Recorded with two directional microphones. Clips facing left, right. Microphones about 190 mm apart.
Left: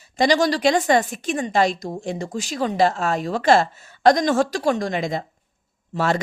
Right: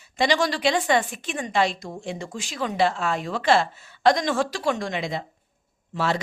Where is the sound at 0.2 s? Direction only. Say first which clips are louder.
Left 4 dB; 40° left (ahead or behind).